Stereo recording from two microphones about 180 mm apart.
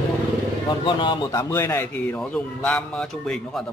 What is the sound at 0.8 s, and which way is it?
Speech, 25° left (ahead or behind).